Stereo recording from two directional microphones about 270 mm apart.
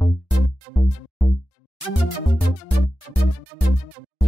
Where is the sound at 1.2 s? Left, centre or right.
Left.